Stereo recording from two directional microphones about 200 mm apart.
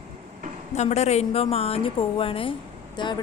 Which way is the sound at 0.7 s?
35° left (ahead or behind).